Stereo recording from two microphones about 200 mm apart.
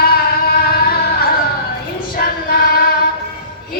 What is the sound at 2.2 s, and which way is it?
Choir, 50° left (ahead or behind).